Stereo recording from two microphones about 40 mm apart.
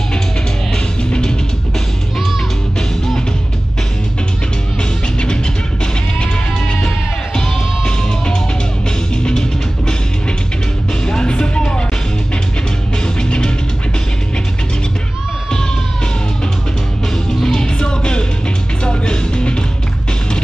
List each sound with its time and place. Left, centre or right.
7.3 s music: centre
11.1 s music: centre
17.4 s music: centre